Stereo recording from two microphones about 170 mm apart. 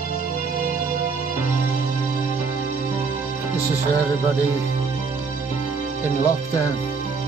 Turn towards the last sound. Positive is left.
turn(degrees=15)  # may be behind; listen again after turning